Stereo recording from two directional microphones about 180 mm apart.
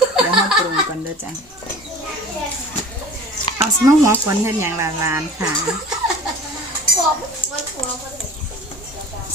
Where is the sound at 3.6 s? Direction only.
15° right (ahead or behind).